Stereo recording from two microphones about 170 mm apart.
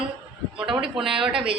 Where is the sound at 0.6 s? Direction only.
5° right (ahead or behind).